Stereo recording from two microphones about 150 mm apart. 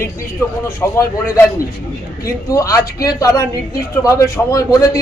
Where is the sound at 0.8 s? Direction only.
15° left (ahead or behind).